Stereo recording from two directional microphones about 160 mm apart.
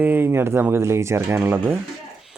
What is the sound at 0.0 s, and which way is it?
Speech, 10° right (ahead or behind).